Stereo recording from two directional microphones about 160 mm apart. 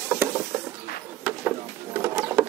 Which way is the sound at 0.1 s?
15° right (ahead or behind).